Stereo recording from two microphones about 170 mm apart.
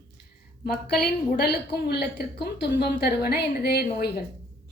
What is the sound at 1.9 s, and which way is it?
A woman's voice, 65° left (ahead or behind).